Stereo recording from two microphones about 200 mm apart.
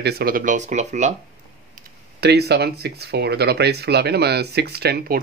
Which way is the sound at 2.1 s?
55° right (ahead or behind).